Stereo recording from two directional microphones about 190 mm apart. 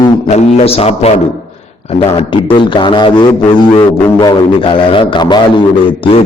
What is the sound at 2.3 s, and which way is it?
Music, 25° left (ahead or behind).